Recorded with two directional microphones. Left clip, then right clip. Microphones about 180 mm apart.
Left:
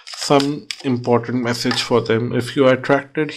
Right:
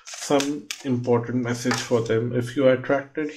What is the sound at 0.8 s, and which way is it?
Speech, 55° left (ahead or behind).